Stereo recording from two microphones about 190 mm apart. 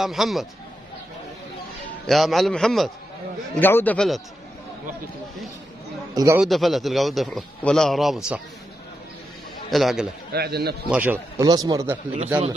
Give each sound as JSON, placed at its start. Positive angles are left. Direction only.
{"t": 0.0, "sound": "a man's voice", "side_deg": 0}
{"t": 2.0, "sound": "a man's voice", "side_deg": 0}
{"t": 6.1, "sound": "a man's voice", "side_deg": -15}
{"t": 6.4, "sound": "a man's voice", "side_deg": 0}
{"t": 9.7, "sound": "a man's voice", "side_deg": 0}
{"t": 10.3, "sound": "a man's voice", "side_deg": -55}
{"t": 10.9, "sound": "a man's voice", "side_deg": -10}
{"t": 11.4, "sound": "a man's voice", "side_deg": -20}